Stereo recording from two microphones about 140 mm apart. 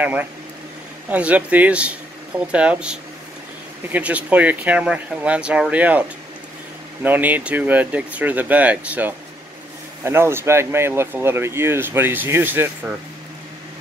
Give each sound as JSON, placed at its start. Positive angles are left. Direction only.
{"t": 0.0, "sound": "speech", "side_deg": -10}